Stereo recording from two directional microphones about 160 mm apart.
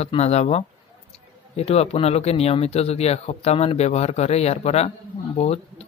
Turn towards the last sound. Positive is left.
turn(degrees=40)  # may be behind; listen again after turning